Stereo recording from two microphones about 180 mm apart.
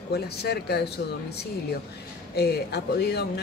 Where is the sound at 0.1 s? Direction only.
65° left (ahead or behind).